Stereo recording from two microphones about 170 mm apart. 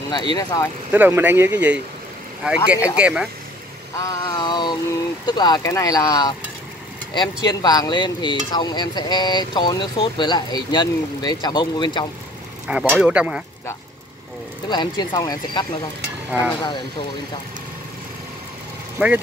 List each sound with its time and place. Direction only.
0.1 s speech: 25° left (ahead or behind)
0.9 s speech: 10° right (ahead or behind)
3.9 s a sound: 20° left (ahead or behind)
5.2 s speech: 25° left (ahead or behind)
7.6 s speech: 25° left (ahead or behind)
12.9 s speech: 5° right (ahead or behind)
14.7 s speech: 25° left (ahead or behind)
16.3 s speech: 10° right (ahead or behind)
19.0 s speech: 5° right (ahead or behind)